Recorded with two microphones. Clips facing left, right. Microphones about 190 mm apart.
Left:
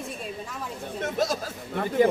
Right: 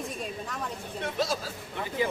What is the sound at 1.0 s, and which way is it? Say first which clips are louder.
Speech: left 3 dB; 45° left (ahead or behind).